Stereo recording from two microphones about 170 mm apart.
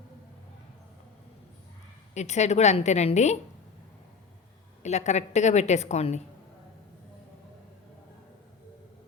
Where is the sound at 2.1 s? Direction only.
40° left (ahead or behind).